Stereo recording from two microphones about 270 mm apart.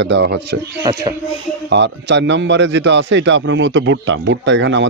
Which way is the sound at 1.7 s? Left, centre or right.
Right.